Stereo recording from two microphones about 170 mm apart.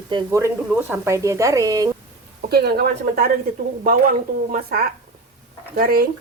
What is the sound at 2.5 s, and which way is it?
A woman's voice, 65° right (ahead or behind).